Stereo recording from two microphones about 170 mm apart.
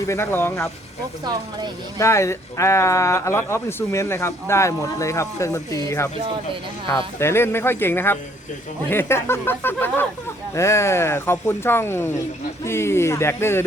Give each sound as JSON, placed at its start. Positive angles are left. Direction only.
{"t": 0.0, "sound": "speech", "side_deg": 15}
{"t": 1.2, "sound": "speech", "side_deg": -25}
{"t": 2.0, "sound": "speech", "side_deg": 15}